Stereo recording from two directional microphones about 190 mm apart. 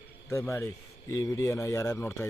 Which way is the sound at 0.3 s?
15° left (ahead or behind).